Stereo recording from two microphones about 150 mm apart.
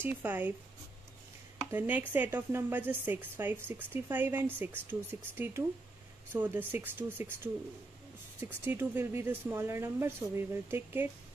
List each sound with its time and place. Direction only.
0.0 s a woman's voice: 15° right (ahead or behind)
1.7 s a woman's voice: 10° right (ahead or behind)
8.4 s a woman's voice: 15° right (ahead or behind)